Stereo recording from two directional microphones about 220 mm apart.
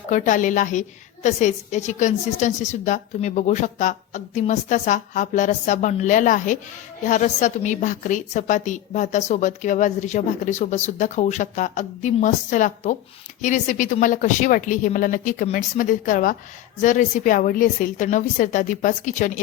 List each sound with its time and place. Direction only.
0.1 s a woman's voice: 35° left (ahead or behind)